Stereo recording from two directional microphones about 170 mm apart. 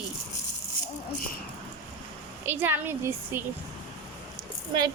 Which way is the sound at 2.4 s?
10° right (ahead or behind).